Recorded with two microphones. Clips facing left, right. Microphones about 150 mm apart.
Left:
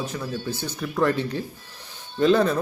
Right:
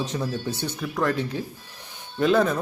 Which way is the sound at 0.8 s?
Centre (ahead or behind).